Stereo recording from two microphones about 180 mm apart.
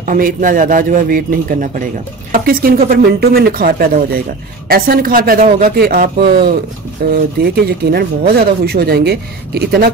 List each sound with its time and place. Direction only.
0.0 s a man's voice: 45° right (ahead or behind); by 9.8 s 65° right (ahead or behind)